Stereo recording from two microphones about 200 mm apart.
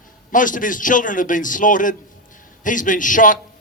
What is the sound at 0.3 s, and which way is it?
A man's voice, 40° left (ahead or behind).